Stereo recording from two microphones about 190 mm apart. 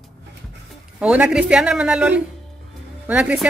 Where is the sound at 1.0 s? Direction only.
5° right (ahead or behind).